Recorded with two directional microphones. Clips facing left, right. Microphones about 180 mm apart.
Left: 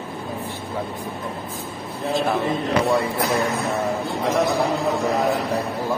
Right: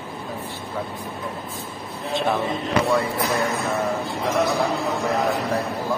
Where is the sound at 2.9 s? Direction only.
15° left (ahead or behind).